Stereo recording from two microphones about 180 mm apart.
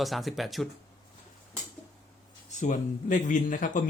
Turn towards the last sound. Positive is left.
turn(degrees=45)  # may be behind; listen again after turning